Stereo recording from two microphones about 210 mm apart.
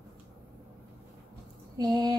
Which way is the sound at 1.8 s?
20° right (ahead or behind).